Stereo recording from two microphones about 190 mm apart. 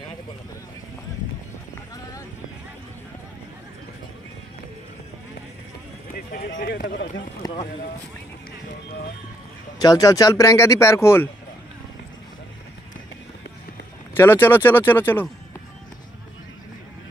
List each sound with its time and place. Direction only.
6.6 s speech: 55° left (ahead or behind)
7.4 s speech: 20° left (ahead or behind)
9.8 s speech: 20° left (ahead or behind)
14.1 s speech: 10° left (ahead or behind)